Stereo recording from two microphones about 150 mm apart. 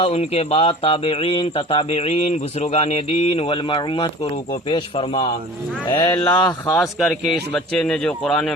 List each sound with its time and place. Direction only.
0.0 s speech: 45° left (ahead or behind)
6.1 s mantra: 25° left (ahead or behind)
6.7 s a man's voice: centre (ahead or behind)